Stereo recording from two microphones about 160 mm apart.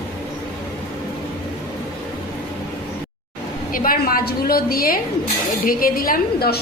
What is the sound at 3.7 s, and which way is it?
A woman's voice, 60° left (ahead or behind).